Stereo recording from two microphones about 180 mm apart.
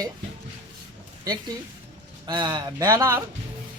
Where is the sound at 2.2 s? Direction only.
25° right (ahead or behind).